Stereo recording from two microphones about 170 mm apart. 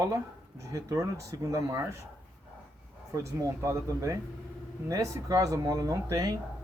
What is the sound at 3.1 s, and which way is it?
Speech, 20° right (ahead or behind).